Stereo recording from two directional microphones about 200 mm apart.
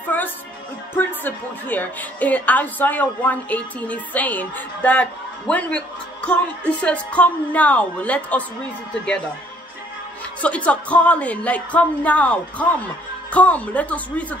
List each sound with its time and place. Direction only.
0.0 s music: 10° left (ahead or behind)
0.9 s a woman's voice: 10° left (ahead or behind)
10.4 s a woman's voice: 5° left (ahead or behind)